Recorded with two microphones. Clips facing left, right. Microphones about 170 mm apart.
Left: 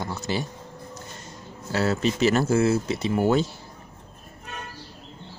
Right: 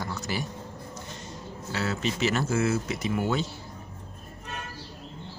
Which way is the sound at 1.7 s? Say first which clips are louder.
Left 6 dB; 40° left (ahead or behind).